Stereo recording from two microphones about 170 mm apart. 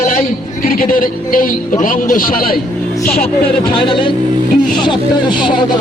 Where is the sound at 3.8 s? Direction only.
30° left (ahead or behind).